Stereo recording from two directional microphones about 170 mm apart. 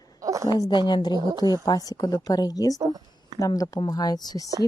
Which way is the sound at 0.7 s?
25° left (ahead or behind).